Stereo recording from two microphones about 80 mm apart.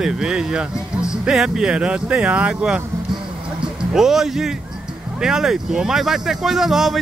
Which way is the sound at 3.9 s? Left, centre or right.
Centre.